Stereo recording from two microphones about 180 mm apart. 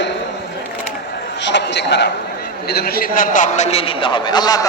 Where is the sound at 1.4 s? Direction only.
80° left.